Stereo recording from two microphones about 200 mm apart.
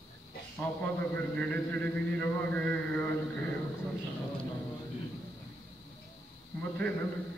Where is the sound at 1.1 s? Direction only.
5° left (ahead or behind).